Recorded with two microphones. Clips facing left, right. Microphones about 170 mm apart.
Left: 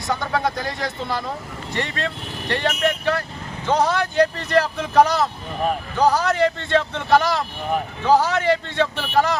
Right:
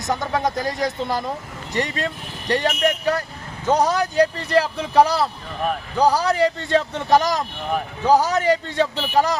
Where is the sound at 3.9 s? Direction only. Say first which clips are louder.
Right 1 dB; 35° right (ahead or behind).